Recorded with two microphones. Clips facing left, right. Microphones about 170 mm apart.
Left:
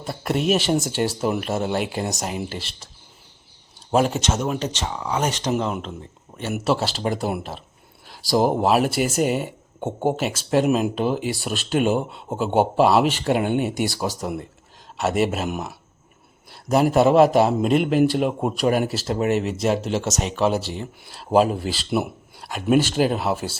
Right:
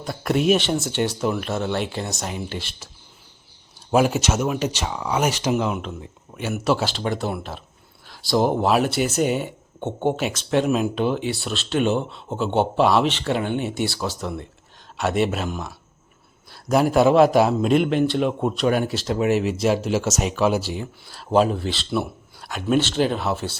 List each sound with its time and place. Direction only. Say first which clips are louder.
0.0 s speech: right 2 dB; 5° left (ahead or behind)
3.9 s speech: right 1 dB; 5° right (ahead or behind)
8.1 s a sound: left 1 dB; 35° left (ahead or behind)
8.4 s speech: left 1 dB; 5° left (ahead or behind)
16.6 s speech: even; centre (ahead or behind)